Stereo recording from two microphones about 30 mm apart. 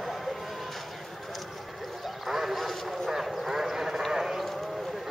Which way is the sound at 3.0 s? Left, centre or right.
Centre.